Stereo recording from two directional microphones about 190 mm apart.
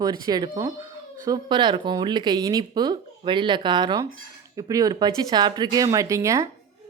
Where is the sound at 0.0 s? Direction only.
20° right (ahead or behind).